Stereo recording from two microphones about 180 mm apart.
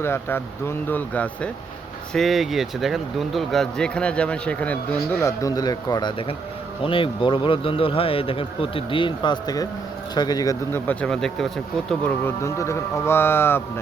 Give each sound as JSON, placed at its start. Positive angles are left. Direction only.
{"t": 0.0, "sound": "speech", "side_deg": 10}